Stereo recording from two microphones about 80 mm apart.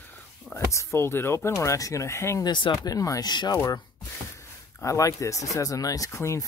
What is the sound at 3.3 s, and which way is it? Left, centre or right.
Speech, left.